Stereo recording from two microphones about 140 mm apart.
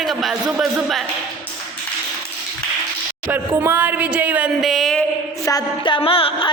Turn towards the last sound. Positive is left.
turn(degrees=40)  # may be behind; listen again after turning